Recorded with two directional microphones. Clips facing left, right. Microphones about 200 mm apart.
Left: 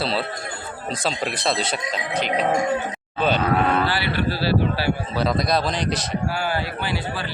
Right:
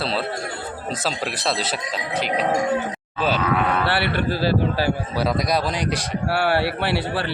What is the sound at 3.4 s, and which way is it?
Speech, 35° left (ahead or behind).